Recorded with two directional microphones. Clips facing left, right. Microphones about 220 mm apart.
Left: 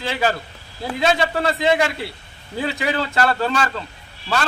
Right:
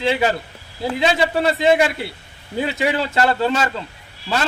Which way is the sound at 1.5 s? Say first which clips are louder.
Right 3 dB; 25° right (ahead or behind).